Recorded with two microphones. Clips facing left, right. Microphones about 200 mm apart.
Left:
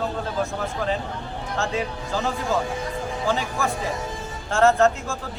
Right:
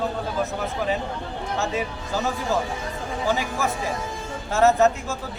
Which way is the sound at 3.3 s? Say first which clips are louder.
Right 1 dB; 5° right (ahead or behind).